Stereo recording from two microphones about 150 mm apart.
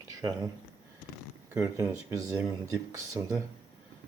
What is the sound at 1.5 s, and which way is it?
Speech, 25° right (ahead or behind).